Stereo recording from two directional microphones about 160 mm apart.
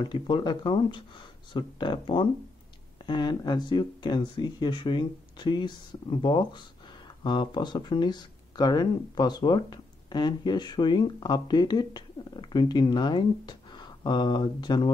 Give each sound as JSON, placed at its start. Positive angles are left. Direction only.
{"t": 0.0, "sound": "speech", "side_deg": 30}